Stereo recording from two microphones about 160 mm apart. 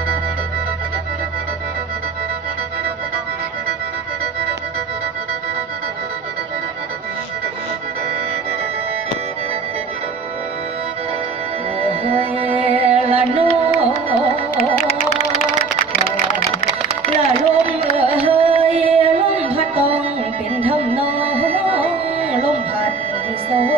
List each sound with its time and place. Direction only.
11.8 s music: 35° right (ahead or behind)
16.4 s music: 35° right (ahead or behind)
23.5 s music: 35° right (ahead or behind)